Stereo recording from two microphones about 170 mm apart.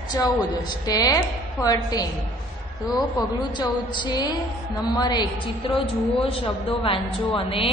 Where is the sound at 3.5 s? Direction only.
25° left (ahead or behind).